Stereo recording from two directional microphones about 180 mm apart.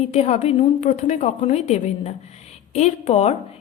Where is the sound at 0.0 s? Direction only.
35° left (ahead or behind).